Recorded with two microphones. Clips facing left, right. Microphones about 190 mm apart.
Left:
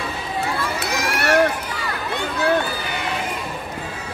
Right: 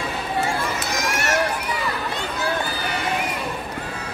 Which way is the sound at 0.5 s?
65° left (ahead or behind).